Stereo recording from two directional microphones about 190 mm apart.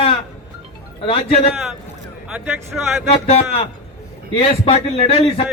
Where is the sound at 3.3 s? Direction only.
30° left (ahead or behind).